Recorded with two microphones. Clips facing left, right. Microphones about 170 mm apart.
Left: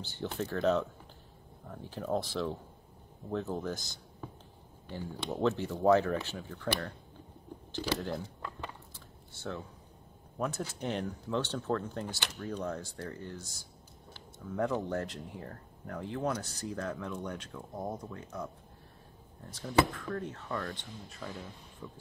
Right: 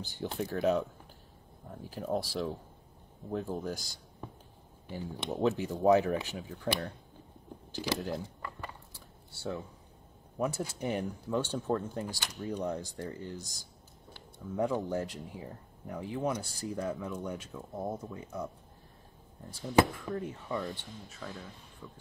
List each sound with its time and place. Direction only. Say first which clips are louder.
0.0 s speech: right 1 dB; 15° right (ahead or behind)
9.3 s speech: right 2 dB; 10° right (ahead or behind)
14.5 s speech: right 1 dB; 10° right (ahead or behind)
19.6 s speech: right 2 dB; 15° right (ahead or behind)
21.1 s speech: left 2 dB; centre (ahead or behind)